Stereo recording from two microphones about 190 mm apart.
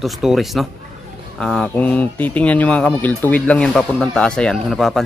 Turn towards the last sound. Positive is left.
turn(degrees=0)  # may be behind; listen again after turning